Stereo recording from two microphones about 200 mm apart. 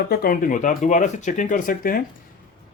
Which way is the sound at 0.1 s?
50° left (ahead or behind).